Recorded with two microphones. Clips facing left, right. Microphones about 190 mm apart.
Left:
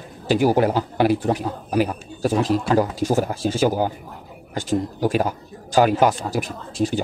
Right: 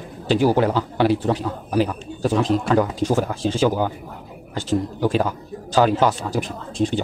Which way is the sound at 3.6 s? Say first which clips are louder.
Even; 40° left (ahead or behind).